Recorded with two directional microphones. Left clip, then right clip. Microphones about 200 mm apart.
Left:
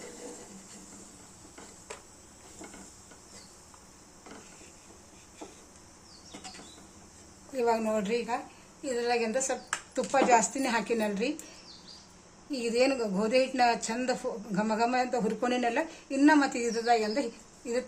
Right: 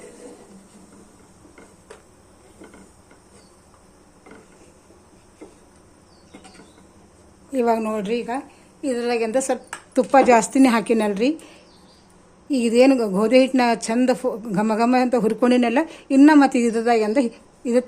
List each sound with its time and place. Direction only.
7.5 s a woman's voice: 45° right (ahead or behind)
12.5 s a woman's voice: 45° right (ahead or behind)